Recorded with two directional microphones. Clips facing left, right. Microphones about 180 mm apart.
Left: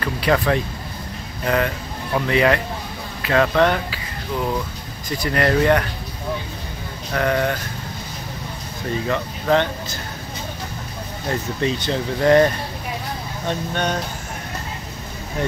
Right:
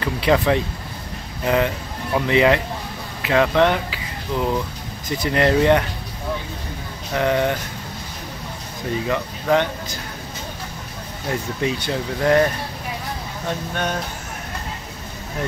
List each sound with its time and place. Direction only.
0.0 s speech: 20° right (ahead or behind)
5.1 s speech: 20° right (ahead or behind)
7.2 s speech: 20° right (ahead or behind)
9.0 s speech: 10° right (ahead or behind)
11.6 s speech: 10° right (ahead or behind)
13.5 s speech: 5° right (ahead or behind)